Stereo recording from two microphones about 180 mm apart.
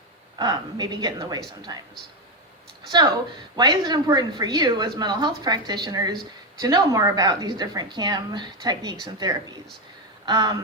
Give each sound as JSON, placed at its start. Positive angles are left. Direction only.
{"t": 0.3, "sound": "a woman's voice", "side_deg": -25}
{"t": 3.5, "sound": "a woman's voice", "side_deg": -25}